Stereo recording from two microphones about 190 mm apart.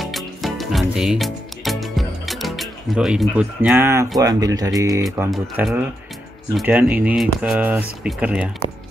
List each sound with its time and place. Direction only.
0.0 s music: centre (ahead or behind)
4.2 s speech: 20° right (ahead or behind)
5.3 s speech: centre (ahead or behind)